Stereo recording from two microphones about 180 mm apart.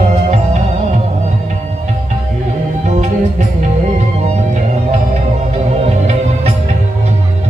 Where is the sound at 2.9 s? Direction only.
40° right (ahead or behind).